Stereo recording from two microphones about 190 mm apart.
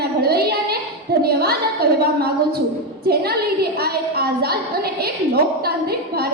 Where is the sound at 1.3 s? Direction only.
55° right (ahead or behind).